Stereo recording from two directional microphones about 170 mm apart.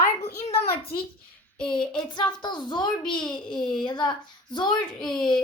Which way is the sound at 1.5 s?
5° left (ahead or behind).